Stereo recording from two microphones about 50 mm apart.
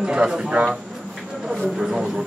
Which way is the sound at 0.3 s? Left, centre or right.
Centre.